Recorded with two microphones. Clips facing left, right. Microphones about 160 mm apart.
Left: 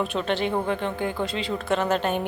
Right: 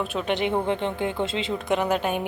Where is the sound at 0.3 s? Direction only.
20° right (ahead or behind).